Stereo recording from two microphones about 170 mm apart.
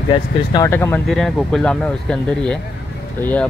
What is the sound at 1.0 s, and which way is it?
Speech, centre (ahead or behind).